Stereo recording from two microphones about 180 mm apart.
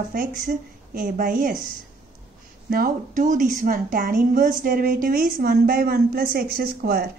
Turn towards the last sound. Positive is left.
turn(degrees=-55)  # may be behind; listen again after turning